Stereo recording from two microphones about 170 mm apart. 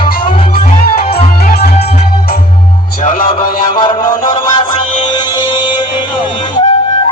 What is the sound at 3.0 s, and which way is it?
Music, 55° left (ahead or behind).